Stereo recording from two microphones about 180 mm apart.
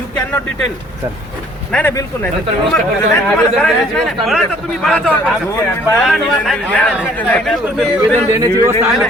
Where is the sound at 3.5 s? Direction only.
Centre (ahead or behind).